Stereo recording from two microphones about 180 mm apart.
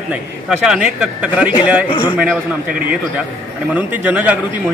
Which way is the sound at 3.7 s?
10° right (ahead or behind).